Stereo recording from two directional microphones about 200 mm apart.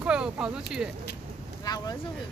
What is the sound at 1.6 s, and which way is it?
Speech, 20° left (ahead or behind).